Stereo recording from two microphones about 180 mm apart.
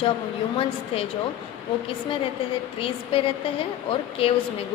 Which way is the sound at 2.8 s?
30° left (ahead or behind).